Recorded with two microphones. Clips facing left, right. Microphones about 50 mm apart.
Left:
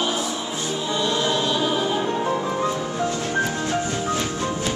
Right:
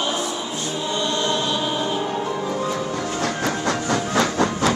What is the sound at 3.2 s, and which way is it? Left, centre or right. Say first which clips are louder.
Music: right 1 dB; right.